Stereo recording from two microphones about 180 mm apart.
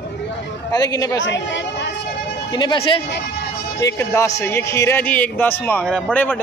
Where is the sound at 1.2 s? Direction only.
90° left.